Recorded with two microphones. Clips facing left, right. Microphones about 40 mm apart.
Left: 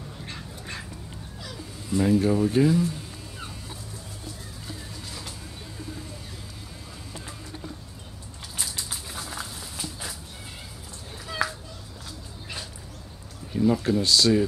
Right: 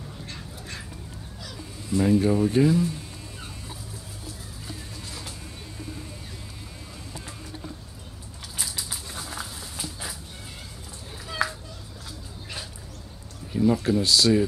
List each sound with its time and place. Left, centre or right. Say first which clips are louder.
0.2 s dog: left 1 dB; centre
1.4 s speech: even; centre
8.5 s a sound: even; centre
11.2 s children playing: right 1 dB; centre
13.5 s speech: right 1 dB; centre